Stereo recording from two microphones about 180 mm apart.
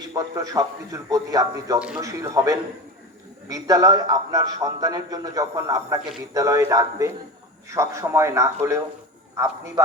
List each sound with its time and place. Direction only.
0.1 s a man's voice: 20° right (ahead or behind)